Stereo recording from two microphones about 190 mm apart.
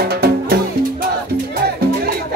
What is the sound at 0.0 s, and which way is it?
Music, 55° right (ahead or behind).